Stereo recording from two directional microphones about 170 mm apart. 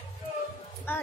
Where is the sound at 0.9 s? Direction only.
10° left (ahead or behind).